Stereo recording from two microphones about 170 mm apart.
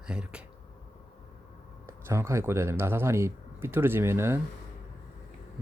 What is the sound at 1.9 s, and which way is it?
Speech, 15° right (ahead or behind).